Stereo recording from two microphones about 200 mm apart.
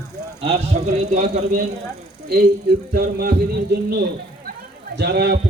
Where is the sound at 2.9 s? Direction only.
50° right (ahead or behind).